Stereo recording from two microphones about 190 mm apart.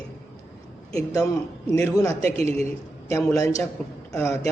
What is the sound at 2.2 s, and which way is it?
Speech, 35° right (ahead or behind).